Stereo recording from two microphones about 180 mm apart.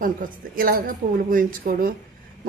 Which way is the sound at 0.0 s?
50° right (ahead or behind).